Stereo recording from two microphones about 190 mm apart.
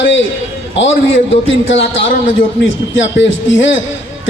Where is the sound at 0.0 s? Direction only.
75° left (ahead or behind).